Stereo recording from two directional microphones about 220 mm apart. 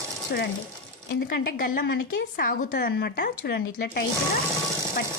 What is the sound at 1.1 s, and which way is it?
A woman's voice, 50° left (ahead or behind).